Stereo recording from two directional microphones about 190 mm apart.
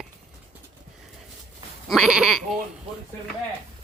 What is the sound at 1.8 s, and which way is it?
Speech, centre (ahead or behind).